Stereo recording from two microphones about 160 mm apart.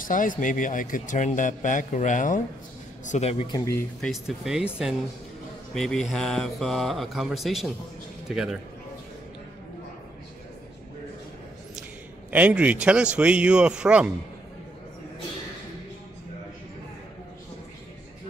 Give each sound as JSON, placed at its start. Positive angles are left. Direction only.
{"t": 0.0, "sound": "speech", "side_deg": 55}
{"t": 3.1, "sound": "speech", "side_deg": 40}
{"t": 3.4, "sound": "speech", "side_deg": 20}
{"t": 4.0, "sound": "speech", "side_deg": 0}
{"t": 5.8, "sound": "speech", "side_deg": 0}
{"t": 12.3, "sound": "a man's voice", "side_deg": -10}